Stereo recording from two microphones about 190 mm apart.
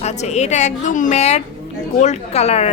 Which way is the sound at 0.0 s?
35° left (ahead or behind).